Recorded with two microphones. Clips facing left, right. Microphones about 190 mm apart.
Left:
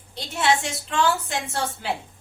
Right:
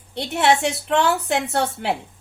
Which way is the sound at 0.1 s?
65° right (ahead or behind).